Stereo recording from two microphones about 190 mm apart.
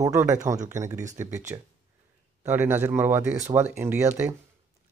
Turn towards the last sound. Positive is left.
turn(degrees=-10)  # may be behind; listen again after turning